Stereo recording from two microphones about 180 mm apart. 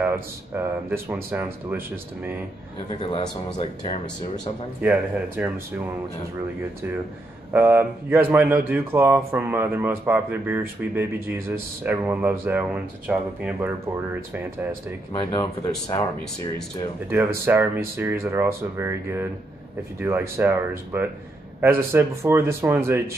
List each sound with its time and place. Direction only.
0.0 s speech: 15° right (ahead or behind)
3.0 s speech: 30° left (ahead or behind)
4.8 s speech: 10° right (ahead or behind)
7.5 s speech: 10° right (ahead or behind)
17.5 s speech: 10° right (ahead or behind)